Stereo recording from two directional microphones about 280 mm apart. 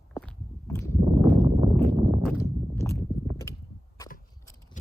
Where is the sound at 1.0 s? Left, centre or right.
Centre.